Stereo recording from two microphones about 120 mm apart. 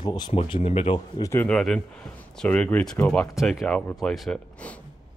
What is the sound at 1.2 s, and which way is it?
Speech, 25° left (ahead or behind).